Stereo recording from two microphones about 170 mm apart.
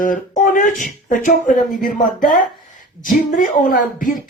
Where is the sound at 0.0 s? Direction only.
50° left (ahead or behind).